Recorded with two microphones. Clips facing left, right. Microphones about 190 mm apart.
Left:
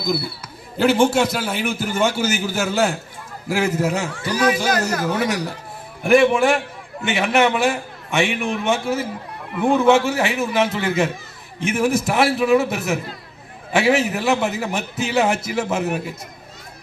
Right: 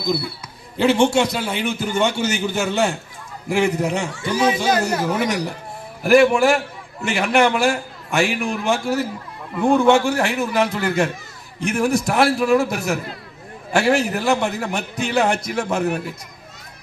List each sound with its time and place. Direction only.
0.0 s a man's voice: centre (ahead or behind)
4.2 s speech: 25° right (ahead or behind)
5.0 s a man's voice: centre (ahead or behind)